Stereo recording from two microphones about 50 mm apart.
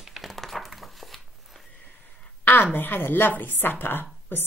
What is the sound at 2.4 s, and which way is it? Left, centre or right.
A woman's voice, left.